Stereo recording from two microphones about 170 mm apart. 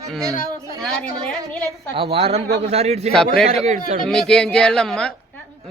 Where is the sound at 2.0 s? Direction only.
35° right (ahead or behind).